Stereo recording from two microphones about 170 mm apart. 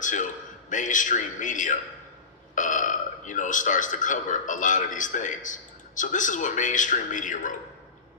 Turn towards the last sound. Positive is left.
turn(degrees=50)  # may be behind; listen again after turning